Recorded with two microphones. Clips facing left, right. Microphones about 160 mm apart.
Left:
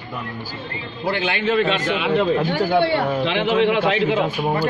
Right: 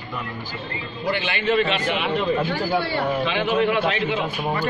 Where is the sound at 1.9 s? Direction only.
90° left.